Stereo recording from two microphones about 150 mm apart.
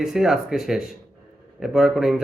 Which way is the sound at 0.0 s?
5° right (ahead or behind).